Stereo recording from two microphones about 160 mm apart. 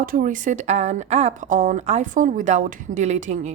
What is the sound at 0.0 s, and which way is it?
A woman's voice, 60° right (ahead or behind).